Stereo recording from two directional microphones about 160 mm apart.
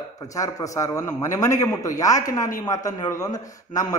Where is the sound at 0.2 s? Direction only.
20° left (ahead or behind).